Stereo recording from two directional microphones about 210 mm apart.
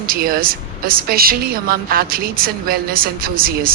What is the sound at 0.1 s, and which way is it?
A woman's voice, 45° right (ahead or behind).